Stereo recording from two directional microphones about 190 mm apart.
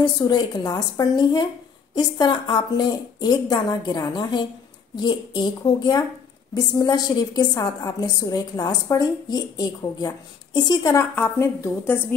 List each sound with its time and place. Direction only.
0.0 s a woman's voice: 20° left (ahead or behind)